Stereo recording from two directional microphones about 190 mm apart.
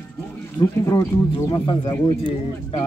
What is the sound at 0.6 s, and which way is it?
Speech, 20° left (ahead or behind).